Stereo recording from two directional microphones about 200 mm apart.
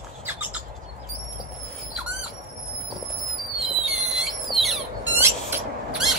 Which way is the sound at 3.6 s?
Centre (ahead or behind).